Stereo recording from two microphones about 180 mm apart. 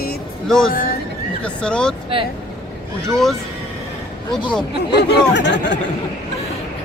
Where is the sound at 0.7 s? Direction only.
50° left (ahead or behind).